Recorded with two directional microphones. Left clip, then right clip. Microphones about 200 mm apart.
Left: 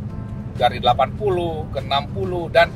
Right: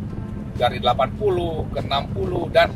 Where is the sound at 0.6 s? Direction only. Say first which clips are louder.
Left 2 dB; 20° left (ahead or behind).